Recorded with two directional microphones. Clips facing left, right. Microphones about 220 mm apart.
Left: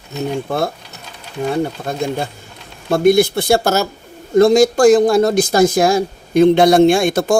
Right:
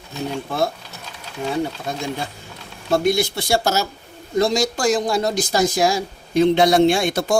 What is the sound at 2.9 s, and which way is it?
Speech, 55° left (ahead or behind).